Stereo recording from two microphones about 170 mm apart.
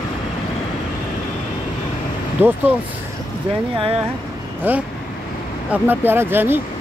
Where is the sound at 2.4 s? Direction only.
10° right (ahead or behind).